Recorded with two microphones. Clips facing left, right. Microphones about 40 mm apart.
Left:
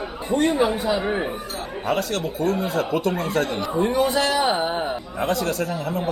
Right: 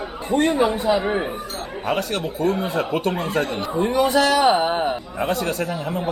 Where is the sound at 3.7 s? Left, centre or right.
Centre.